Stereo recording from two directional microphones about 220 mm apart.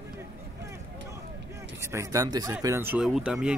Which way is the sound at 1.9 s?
15° right (ahead or behind).